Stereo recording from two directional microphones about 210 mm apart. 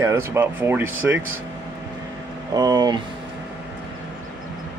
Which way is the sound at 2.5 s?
20° right (ahead or behind).